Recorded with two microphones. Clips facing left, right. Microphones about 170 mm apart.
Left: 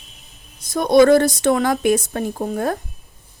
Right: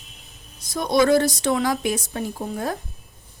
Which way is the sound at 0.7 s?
55° left (ahead or behind).